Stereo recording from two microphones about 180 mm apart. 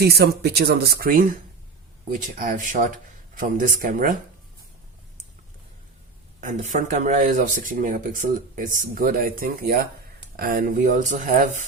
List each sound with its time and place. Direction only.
0.0 s speech: 60° right (ahead or behind)
6.4 s speech: 45° right (ahead or behind)